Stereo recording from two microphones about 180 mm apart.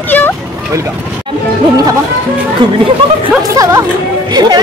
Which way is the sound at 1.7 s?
20° right (ahead or behind).